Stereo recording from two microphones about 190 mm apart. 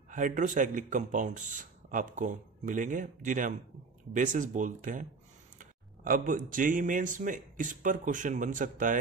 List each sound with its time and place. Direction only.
0.1 s speech: 45° right (ahead or behind)